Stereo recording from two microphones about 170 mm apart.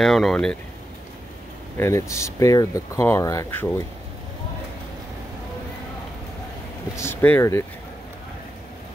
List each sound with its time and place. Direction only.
0.0 s speech: centre (ahead or behind)
1.8 s speech: 15° left (ahead or behind)
7.0 s speech: 15° left (ahead or behind)